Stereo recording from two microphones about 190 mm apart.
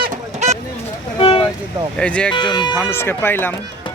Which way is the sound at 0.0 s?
40° right (ahead or behind).